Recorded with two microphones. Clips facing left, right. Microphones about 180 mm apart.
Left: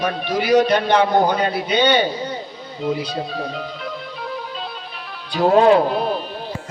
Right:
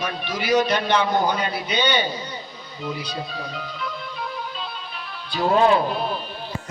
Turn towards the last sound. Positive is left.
turn(degrees=70)  # may be behind; listen again after turning